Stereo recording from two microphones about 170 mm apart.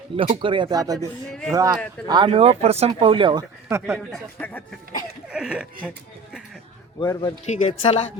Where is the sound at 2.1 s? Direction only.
30° right (ahead or behind).